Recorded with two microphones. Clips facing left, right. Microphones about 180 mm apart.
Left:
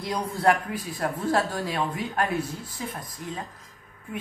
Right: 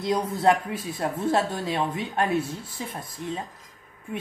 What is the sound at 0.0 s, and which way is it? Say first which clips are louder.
Speech: right 2 dB; 20° right (ahead or behind).